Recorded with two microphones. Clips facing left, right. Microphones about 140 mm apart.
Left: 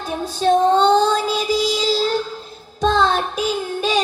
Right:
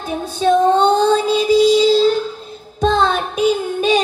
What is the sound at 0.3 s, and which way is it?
Child singing, 55° right (ahead or behind).